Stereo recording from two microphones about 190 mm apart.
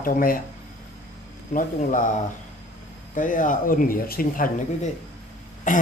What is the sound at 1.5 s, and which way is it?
Speech, 45° left (ahead or behind).